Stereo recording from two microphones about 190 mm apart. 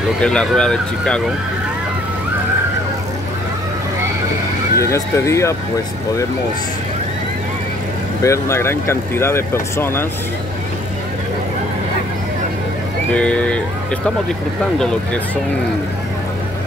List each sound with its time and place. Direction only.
0.2 s speech: 5° left (ahead or behind)
4.7 s speech: 15° left (ahead or behind)
8.2 s speech: 15° left (ahead or behind)
13.1 s speech: 5° left (ahead or behind)